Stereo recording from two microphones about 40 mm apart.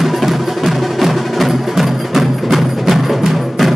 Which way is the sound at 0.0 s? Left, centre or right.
Centre.